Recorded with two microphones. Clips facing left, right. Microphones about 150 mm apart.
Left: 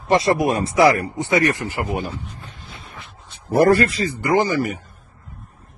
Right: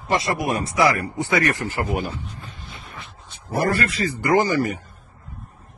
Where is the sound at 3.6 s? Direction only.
50° left (ahead or behind).